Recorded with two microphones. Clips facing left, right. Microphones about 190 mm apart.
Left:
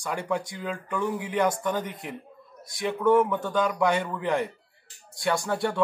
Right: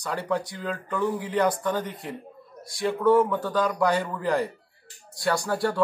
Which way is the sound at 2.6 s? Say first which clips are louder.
Right 2 dB; 20° left (ahead or behind).